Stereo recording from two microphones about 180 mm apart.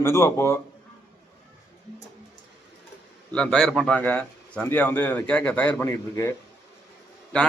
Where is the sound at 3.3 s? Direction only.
5° left (ahead or behind).